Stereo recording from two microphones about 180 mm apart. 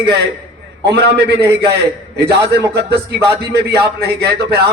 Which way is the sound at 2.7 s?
65° right (ahead or behind).